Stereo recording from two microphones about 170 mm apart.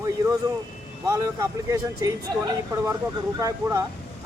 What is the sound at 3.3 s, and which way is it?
Speech, 15° right (ahead or behind).